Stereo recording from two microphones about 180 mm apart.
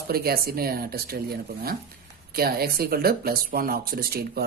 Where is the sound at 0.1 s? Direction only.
60° right (ahead or behind).